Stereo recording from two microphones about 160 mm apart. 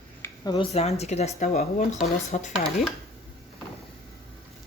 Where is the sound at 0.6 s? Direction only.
40° left (ahead or behind).